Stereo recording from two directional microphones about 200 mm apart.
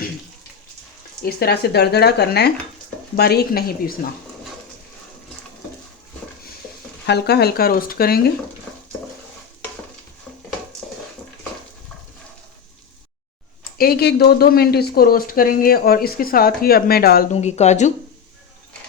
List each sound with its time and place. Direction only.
1.2 s speech: 50° left (ahead or behind)
7.1 s speech: 55° left (ahead or behind)
13.7 s speech: 50° left (ahead or behind)
17.3 s speech: 35° left (ahead or behind)